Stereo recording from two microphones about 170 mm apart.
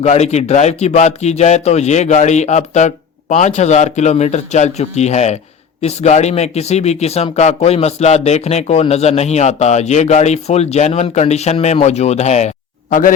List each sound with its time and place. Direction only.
0.0 s speech: 40° left (ahead or behind)
12.9 s speech: 50° left (ahead or behind)